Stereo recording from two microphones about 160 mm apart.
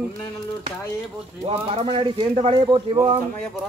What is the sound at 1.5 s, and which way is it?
Speech, 40° right (ahead or behind).